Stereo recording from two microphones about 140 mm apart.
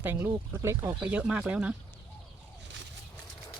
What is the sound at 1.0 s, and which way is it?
Speech, 10° right (ahead or behind).